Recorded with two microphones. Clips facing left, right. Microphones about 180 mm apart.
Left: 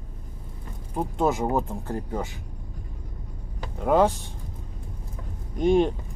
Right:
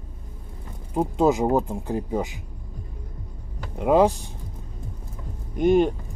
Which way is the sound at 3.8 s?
15° right (ahead or behind).